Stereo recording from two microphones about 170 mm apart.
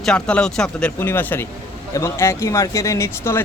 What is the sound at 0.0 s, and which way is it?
Speech, 5° left (ahead or behind).